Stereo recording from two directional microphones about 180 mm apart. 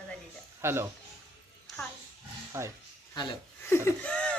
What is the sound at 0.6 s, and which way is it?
Speech, 15° right (ahead or behind).